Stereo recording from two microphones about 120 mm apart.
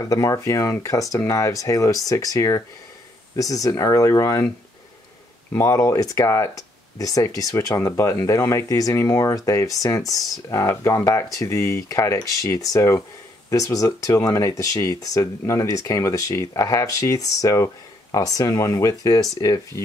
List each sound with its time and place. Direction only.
0.0 s speech: 30° left (ahead or behind)
5.5 s speech: 25° left (ahead or behind)